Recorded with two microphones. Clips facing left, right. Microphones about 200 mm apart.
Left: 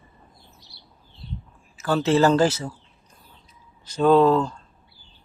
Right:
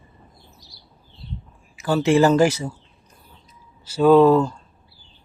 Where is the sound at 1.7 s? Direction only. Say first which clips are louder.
Right 3 dB; 10° right (ahead or behind).